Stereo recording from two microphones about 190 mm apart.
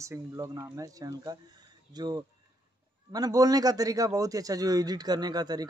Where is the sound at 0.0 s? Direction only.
15° right (ahead or behind).